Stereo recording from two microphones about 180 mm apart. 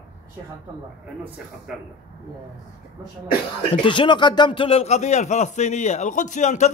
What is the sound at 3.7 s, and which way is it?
Speech, 30° left (ahead or behind).